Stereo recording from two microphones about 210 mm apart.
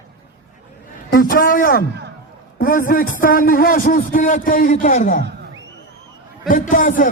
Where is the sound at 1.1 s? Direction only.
45° left (ahead or behind).